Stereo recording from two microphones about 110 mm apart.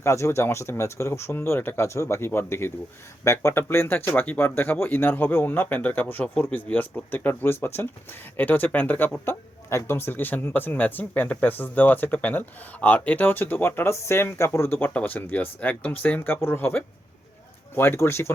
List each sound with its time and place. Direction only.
0.0 s speech: 25° left (ahead or behind)